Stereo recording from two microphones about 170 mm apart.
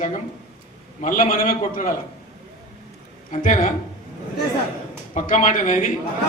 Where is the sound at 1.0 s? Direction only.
50° left (ahead or behind).